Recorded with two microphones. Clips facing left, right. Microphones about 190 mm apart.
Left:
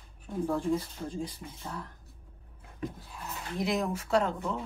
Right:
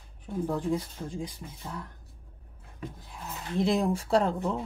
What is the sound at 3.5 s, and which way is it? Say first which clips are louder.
Speech: right 5 dB; 30° right (ahead or behind).